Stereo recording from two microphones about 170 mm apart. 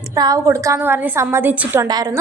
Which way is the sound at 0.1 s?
20° right (ahead or behind).